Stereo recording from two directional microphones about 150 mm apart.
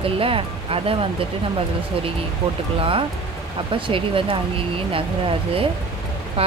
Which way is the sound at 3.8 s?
35° right (ahead or behind).